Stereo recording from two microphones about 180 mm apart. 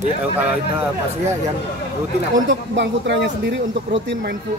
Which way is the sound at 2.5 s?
75° right (ahead or behind).